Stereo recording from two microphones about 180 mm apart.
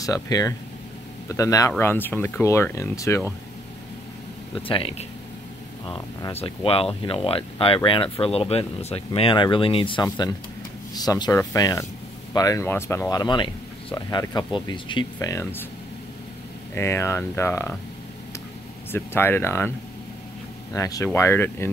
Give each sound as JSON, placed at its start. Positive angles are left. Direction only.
{"t": 0.0, "sound": "speech", "side_deg": 20}
{"t": 4.6, "sound": "speech", "side_deg": 30}
{"t": 16.7, "sound": "speech", "side_deg": 15}
{"t": 18.9, "sound": "speech", "side_deg": 10}
{"t": 20.7, "sound": "speech", "side_deg": 20}